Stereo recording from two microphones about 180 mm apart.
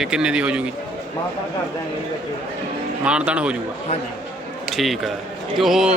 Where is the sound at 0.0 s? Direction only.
5° right (ahead or behind).